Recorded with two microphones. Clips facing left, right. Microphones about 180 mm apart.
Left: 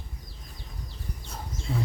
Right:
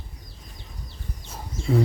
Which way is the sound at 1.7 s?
70° right (ahead or behind).